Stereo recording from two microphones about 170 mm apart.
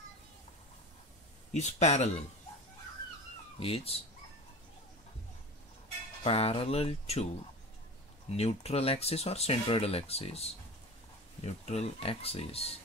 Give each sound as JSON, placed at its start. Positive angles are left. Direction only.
{"t": 1.5, "sound": "speech", "side_deg": 40}
{"t": 3.5, "sound": "speech", "side_deg": 35}
{"t": 6.2, "sound": "speech", "side_deg": 35}
{"t": 8.3, "sound": "speech", "side_deg": 35}